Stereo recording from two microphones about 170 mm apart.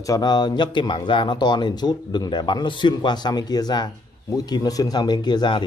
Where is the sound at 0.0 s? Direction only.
20° left (ahead or behind).